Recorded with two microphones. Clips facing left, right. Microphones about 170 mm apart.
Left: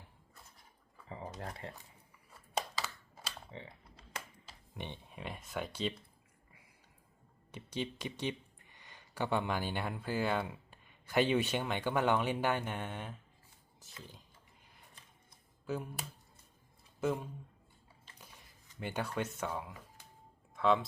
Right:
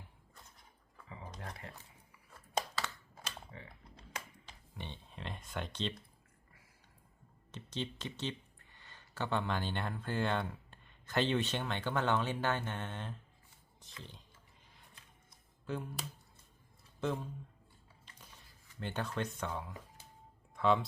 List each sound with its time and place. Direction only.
1.4 s a sound: 35° left (ahead or behind)
3.5 s typing: 25° left (ahead or behind)
4.8 s a sound: 15° left (ahead or behind)
7.5 s speech: 10° left (ahead or behind)
15.6 s speech: 5° left (ahead or behind)
17.0 s speech: 10° left (ahead or behind)
18.2 s dishes: 10° left (ahead or behind)
20.6 s speech: centre (ahead or behind)